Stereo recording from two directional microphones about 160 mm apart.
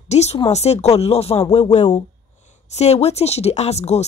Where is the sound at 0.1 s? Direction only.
45° left (ahead or behind).